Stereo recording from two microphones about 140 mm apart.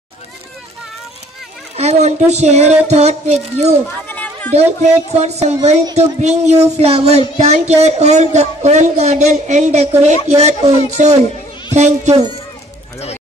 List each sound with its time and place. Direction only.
1.8 s speech: 50° right (ahead or behind)
4.1 s a sound: 10° left (ahead or behind)
4.8 s speech: 50° right (ahead or behind)